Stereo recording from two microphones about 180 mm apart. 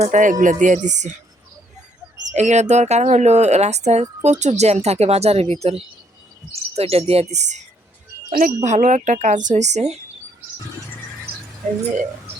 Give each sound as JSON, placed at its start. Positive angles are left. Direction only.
{"t": 0.0, "sound": "speech", "side_deg": -45}
{"t": 2.3, "sound": "speech", "side_deg": -40}
{"t": 8.3, "sound": "speech", "side_deg": -50}